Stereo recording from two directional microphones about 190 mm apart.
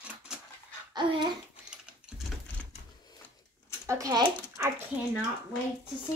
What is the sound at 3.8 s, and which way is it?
Speech, 15° right (ahead or behind).